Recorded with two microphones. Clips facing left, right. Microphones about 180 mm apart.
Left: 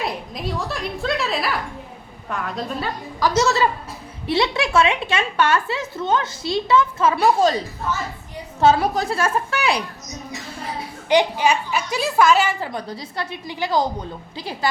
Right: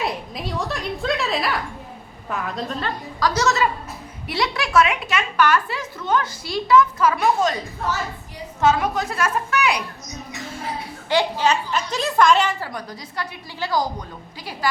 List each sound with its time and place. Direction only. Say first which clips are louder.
0.0 s a sound: even; centre (ahead or behind)
2.3 s a woman's voice: even; centre (ahead or behind)
3.4 s a woman's voice: left 1 dB; 30° left (ahead or behind)
8.6 s a woman's voice: left 3 dB; 35° left (ahead or behind)
11.1 s a woman's voice: left 2 dB; 15° left (ahead or behind)
12.5 s a woman's voice: left 3 dB; 25° left (ahead or behind)